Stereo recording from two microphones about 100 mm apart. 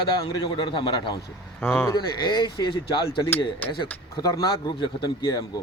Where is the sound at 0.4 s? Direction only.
55° left (ahead or behind).